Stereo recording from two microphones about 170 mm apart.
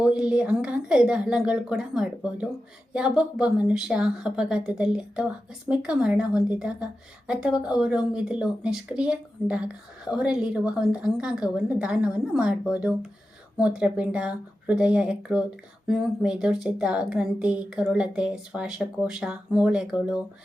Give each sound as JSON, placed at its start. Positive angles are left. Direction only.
{"t": 0.0, "sound": "speech", "side_deg": -5}